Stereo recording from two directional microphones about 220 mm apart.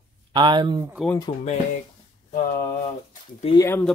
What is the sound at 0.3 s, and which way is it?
Speech, 20° right (ahead or behind).